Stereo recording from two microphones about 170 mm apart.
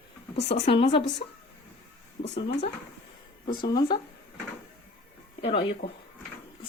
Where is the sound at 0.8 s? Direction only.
25° left (ahead or behind).